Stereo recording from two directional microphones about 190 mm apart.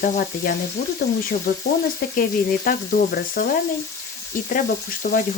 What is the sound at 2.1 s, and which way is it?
Frying, 45° left (ahead or behind).